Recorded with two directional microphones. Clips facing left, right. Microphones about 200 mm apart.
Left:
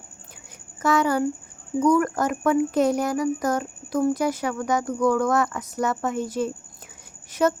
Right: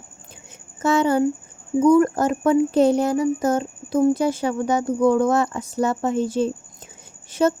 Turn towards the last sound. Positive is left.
turn(degrees=-25)  # may be behind; listen again after turning